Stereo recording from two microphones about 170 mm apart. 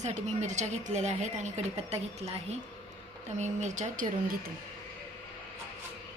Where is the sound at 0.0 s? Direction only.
45° right (ahead or behind).